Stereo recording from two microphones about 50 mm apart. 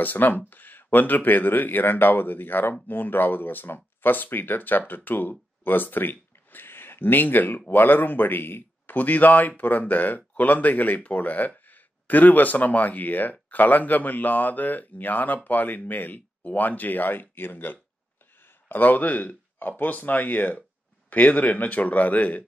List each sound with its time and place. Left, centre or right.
0.0 s speech: left
8.9 s speech: left
18.4 s a sound: left
19.8 s speech: left